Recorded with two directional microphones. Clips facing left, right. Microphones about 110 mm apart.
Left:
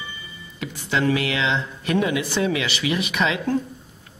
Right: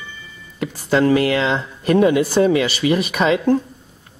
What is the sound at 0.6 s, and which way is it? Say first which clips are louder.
Speech: right 7 dB; 45° right (ahead or behind).